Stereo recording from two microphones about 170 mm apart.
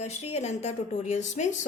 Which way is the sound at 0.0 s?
40° left (ahead or behind).